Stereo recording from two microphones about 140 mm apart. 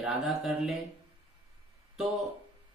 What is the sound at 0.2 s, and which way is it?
Speech, centre (ahead or behind).